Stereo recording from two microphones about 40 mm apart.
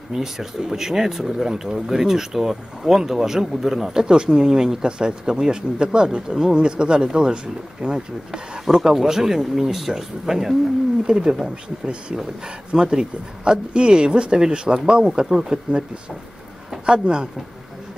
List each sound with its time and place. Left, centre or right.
0.1 s speech: centre
16.8 s speech: right